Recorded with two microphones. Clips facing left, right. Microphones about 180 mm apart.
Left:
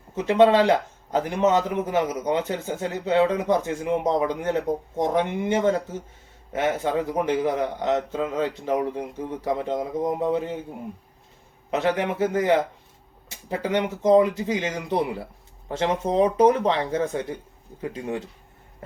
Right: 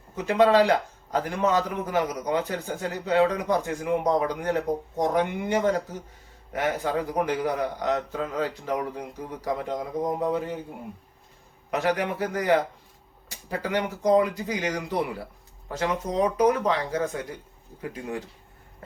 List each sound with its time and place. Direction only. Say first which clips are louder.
0.2 s a man's voice: left 2 dB; 25° left (ahead or behind)
11.7 s a man's voice: left 2 dB; 25° left (ahead or behind)